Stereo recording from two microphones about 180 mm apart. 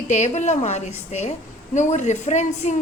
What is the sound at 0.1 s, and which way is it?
A woman's voice, 40° left (ahead or behind).